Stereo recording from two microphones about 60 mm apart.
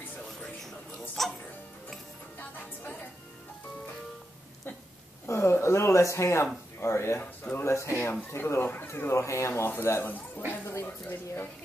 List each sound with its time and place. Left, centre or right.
1.2 s music: centre
2.3 s music: left
5.2 s speech: left
7.2 s speech: left
7.6 s speech: left
8.6 s speech: left